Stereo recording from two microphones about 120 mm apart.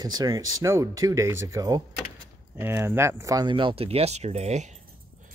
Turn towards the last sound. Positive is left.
turn(degrees=-70)  # may be behind; listen again after turning